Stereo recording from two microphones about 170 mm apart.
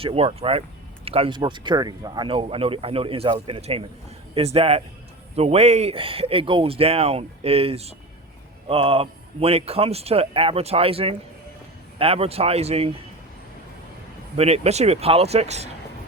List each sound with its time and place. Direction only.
0.0 s speech: 35° right (ahead or behind)
14.3 s speech: 40° right (ahead or behind)